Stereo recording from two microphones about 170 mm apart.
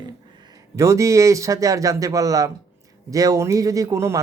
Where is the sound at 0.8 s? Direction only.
20° right (ahead or behind).